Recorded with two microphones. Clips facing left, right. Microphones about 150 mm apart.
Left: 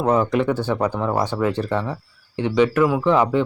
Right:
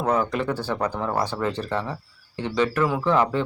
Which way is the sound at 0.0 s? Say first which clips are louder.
Left 5 dB; 20° left (ahead or behind).